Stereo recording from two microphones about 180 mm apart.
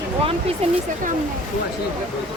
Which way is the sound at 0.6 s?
35° right (ahead or behind).